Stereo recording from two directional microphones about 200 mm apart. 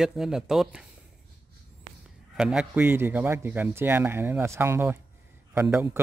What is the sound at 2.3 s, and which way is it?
A man's voice, 5° right (ahead or behind).